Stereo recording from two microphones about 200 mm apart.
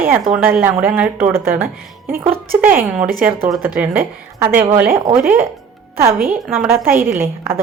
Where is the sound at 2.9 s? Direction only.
45° right (ahead or behind).